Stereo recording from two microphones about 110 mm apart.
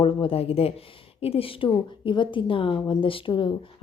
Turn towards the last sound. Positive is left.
turn(degrees=50)  # may be behind; listen again after turning